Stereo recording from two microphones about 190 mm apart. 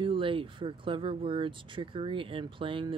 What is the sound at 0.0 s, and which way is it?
Speech, 25° right (ahead or behind).